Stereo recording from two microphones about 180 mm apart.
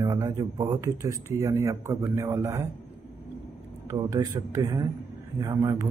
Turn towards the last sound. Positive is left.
turn(degrees=-20)  # may be behind; listen again after turning